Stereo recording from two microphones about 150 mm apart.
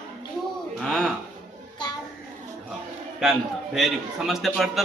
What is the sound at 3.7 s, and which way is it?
A man's voice, centre (ahead or behind).